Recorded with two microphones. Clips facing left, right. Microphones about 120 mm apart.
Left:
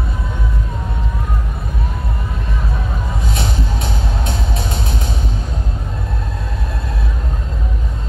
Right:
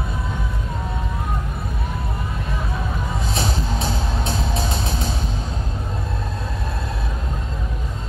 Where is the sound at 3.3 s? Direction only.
25° right (ahead or behind).